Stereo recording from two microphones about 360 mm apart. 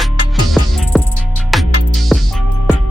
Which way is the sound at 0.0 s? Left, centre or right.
Centre.